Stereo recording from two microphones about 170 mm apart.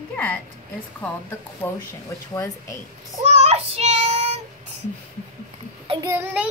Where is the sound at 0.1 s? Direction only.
10° left (ahead or behind).